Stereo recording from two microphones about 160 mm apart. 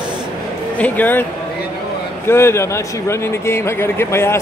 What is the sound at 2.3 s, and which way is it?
A man's voice, 15° left (ahead or behind).